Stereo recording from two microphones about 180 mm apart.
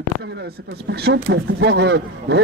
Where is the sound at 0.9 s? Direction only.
65° right (ahead or behind).